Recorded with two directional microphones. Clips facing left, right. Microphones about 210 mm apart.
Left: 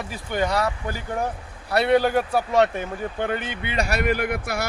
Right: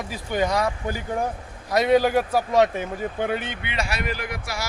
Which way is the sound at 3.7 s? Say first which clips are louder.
Left 6 dB; 45° left (ahead or behind).